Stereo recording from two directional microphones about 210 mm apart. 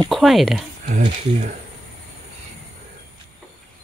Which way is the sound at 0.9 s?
35° right (ahead or behind).